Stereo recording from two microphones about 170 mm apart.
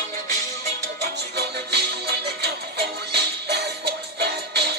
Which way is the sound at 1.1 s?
75° right (ahead or behind).